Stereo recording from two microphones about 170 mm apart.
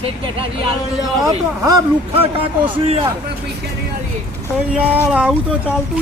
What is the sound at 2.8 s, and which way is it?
Speech, 35° right (ahead or behind).